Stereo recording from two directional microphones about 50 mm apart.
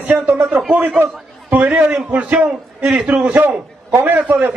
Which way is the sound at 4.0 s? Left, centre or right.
Right.